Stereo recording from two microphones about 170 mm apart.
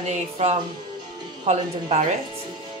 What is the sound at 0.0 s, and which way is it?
A woman's voice, 40° right (ahead or behind).